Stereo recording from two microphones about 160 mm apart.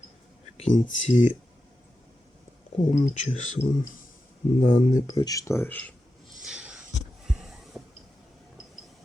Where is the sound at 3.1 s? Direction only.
50° left (ahead or behind).